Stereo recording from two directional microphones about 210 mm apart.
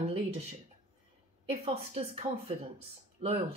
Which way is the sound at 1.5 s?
30° right (ahead or behind).